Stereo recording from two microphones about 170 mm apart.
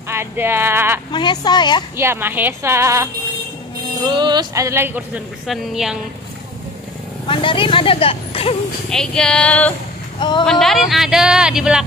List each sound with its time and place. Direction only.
0.1 s a woman's voice: 15° right (ahead or behind)
1.1 s a woman's voice: 25° left (ahead or behind)
2.0 s a woman's voice: 15° right (ahead or behind)
4.1 s a woman's voice: 25° right (ahead or behind); by 5.9 s centre (ahead or behind)
7.2 s speech: 30° left (ahead or behind)
8.9 s speech: 5° left (ahead or behind)